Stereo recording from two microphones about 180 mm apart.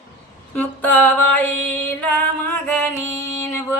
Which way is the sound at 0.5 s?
10° left (ahead or behind).